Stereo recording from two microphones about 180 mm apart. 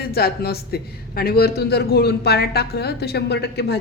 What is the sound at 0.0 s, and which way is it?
Speech, 60° left (ahead or behind).